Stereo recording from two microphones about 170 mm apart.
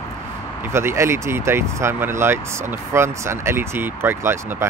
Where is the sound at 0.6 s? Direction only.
15° right (ahead or behind).